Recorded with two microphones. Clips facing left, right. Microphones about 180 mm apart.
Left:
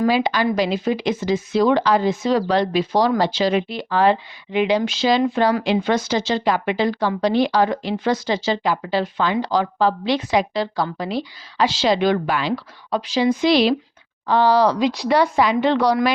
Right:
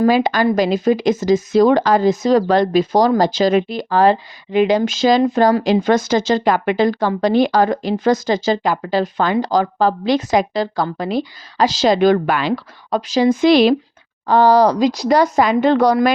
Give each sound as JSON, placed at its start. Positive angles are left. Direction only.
{"t": 0.0, "sound": "speech", "side_deg": -45}